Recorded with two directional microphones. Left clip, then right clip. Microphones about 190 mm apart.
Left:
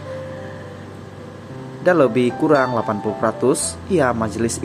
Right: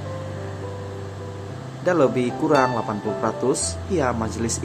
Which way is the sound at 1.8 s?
20° left (ahead or behind).